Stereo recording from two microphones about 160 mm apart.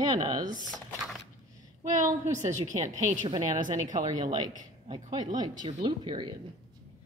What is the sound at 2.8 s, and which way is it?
Speech, 45° right (ahead or behind).